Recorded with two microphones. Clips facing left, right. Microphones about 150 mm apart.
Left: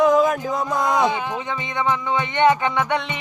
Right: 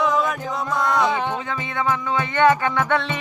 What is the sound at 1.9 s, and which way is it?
Music, 20° left (ahead or behind).